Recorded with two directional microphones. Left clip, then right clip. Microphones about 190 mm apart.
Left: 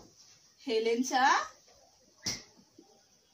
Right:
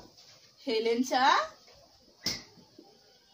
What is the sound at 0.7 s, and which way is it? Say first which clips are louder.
Speech: right 1 dB; 5° right (ahead or behind).